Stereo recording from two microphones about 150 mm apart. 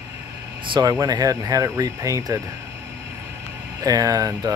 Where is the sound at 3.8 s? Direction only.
25° right (ahead or behind).